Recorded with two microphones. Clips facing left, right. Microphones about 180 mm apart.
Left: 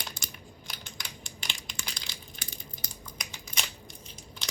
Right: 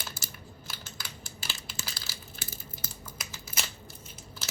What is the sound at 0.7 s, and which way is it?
Crushing, 15° left (ahead or behind).